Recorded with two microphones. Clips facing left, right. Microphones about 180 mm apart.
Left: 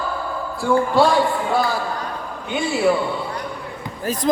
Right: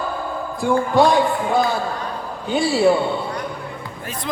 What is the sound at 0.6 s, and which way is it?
Music, 15° right (ahead or behind).